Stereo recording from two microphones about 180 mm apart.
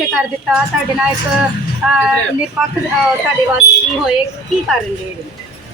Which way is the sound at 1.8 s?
5° right (ahead or behind).